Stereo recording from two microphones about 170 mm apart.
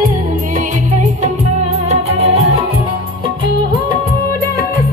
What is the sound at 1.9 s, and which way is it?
Music, 35° right (ahead or behind).